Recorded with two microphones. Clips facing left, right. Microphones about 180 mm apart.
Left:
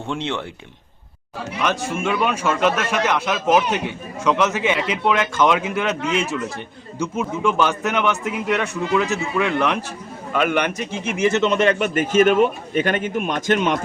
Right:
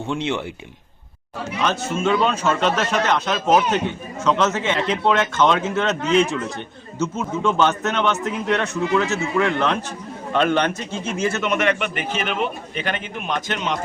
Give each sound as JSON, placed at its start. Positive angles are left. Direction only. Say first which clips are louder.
{"t": 0.1, "sound": "speech", "louder": "right 1 dB", "side_deg": -5}
{"t": 1.6, "sound": "a man's voice", "louder": "right 1 dB", "side_deg": 15}